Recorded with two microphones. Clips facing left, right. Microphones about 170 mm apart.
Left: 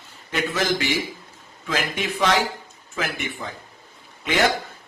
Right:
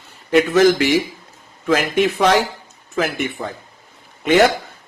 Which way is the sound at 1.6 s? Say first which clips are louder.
Right 10 dB; 60° right (ahead or behind).